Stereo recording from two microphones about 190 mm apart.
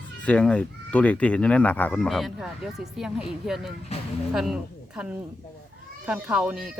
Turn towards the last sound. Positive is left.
turn(degrees=-5)  # may be behind; listen again after turning